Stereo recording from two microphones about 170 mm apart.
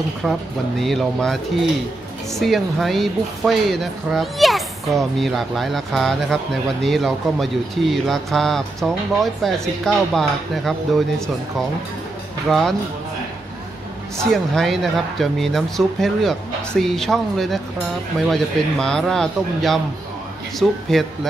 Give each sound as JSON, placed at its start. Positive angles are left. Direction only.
{"t": 0.2, "sound": "speech", "side_deg": 0}
{"t": 12.4, "sound": "speech", "side_deg": 0}
{"t": 14.3, "sound": "speech", "side_deg": 0}